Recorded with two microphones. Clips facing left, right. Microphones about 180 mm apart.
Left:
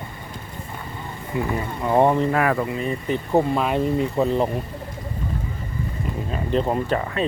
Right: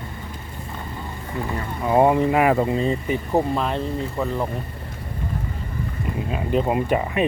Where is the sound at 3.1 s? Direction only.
Centre (ahead or behind).